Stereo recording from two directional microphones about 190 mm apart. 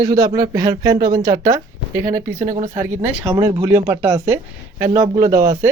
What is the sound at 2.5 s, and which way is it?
Speech, 45° right (ahead or behind).